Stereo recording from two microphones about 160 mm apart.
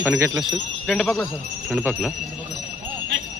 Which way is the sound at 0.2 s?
20° right (ahead or behind).